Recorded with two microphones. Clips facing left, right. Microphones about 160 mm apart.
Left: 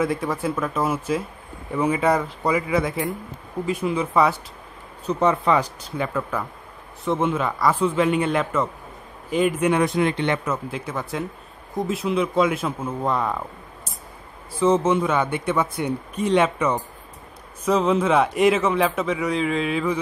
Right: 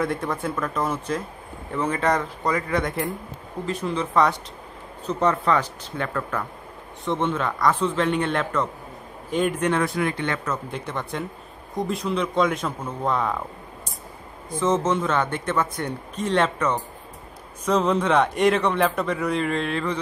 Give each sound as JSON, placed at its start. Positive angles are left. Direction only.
{"t": 0.0, "sound": "a man's voice", "side_deg": 0}
{"t": 10.5, "sound": "a man's voice", "side_deg": 5}
{"t": 14.5, "sound": "a man's voice", "side_deg": 10}